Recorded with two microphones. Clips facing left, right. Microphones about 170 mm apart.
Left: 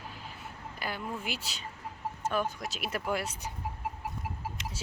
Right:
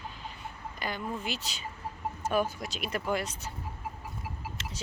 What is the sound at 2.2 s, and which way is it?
Speech, 10° right (ahead or behind).